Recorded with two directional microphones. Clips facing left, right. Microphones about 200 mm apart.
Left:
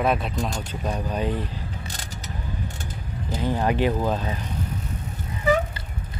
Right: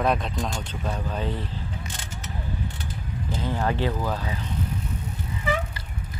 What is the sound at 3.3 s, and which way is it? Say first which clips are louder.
Speech: left 3 dB; 15° left (ahead or behind).